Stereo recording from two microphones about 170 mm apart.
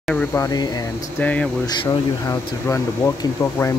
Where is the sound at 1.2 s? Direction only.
10° left (ahead or behind).